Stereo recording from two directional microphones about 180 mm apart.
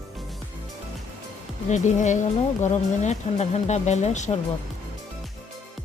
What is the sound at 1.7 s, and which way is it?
Speech, 40° left (ahead or behind).